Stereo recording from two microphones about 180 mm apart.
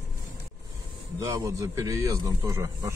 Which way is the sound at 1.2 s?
20° right (ahead or behind).